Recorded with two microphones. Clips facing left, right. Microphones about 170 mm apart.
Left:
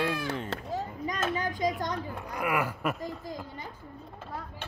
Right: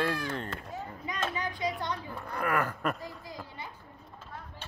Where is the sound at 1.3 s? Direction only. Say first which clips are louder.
Left 4 dB; 45° left (ahead or behind).